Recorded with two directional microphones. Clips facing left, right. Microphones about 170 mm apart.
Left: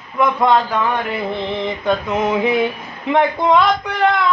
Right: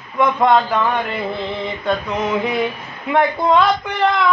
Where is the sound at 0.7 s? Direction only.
10° left (ahead or behind).